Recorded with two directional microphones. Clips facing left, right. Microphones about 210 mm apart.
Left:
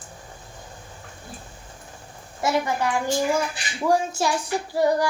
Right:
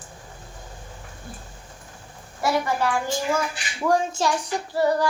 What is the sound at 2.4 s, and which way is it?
Speech, 20° left (ahead or behind).